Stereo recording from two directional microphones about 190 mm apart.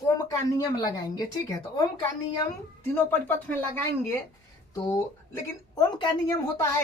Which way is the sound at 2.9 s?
10° left (ahead or behind).